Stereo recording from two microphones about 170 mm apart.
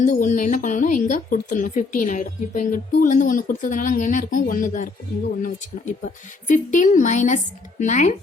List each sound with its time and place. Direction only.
0.0 s a woman's voice: 50° left (ahead or behind)